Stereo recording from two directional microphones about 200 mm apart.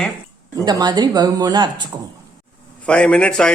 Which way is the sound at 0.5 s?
20° right (ahead or behind).